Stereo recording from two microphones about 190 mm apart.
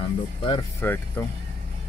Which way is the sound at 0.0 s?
25° left (ahead or behind).